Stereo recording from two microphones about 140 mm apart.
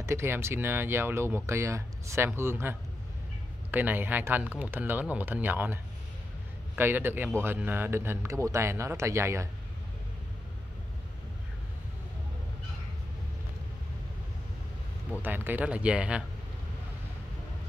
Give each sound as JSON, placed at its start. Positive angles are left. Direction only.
{"t": 0.0, "sound": "a man's voice", "side_deg": -20}
{"t": 15.2, "sound": "speech", "side_deg": -15}